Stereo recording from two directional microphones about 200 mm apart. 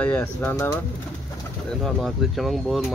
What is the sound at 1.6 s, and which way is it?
Speech, centre (ahead or behind).